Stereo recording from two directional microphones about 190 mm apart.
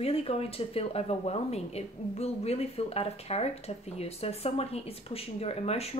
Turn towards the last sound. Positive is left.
turn(degrees=35)  # may be behind; listen again after turning